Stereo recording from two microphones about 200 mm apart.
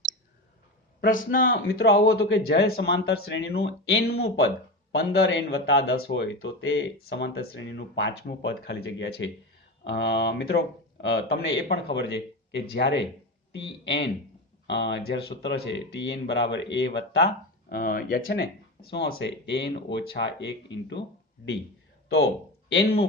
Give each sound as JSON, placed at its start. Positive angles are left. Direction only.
{"t": 1.3, "sound": "speech", "side_deg": 45}
{"t": 22.7, "sound": "speech", "side_deg": 50}